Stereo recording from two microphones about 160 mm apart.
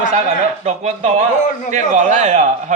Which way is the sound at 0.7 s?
45° right (ahead or behind).